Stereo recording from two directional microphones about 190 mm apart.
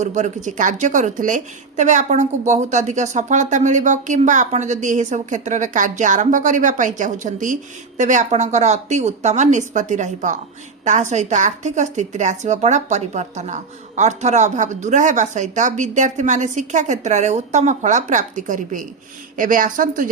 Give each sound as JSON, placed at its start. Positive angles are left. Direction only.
{"t": 0.0, "sound": "a woman's voice", "side_deg": -40}